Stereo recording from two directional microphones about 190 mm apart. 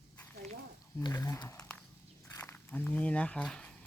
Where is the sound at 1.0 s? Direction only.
15° left (ahead or behind).